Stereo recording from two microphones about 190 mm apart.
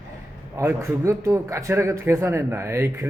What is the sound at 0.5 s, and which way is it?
Speech, 15° right (ahead or behind).